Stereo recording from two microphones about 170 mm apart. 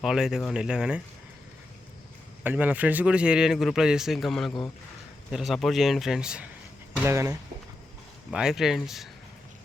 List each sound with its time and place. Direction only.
0.0 s a man's voice: 5° right (ahead or behind)
2.4 s a man's voice: 10° right (ahead or behind)
7.0 s speech: 15° right (ahead or behind)
8.3 s a man's voice: 5° right (ahead or behind)